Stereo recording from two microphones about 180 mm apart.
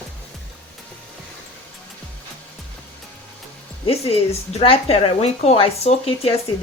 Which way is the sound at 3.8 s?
35° left (ahead or behind).